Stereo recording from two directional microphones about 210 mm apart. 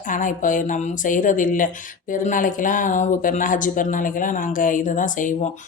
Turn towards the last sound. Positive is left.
turn(degrees=40)  # may be behind; listen again after turning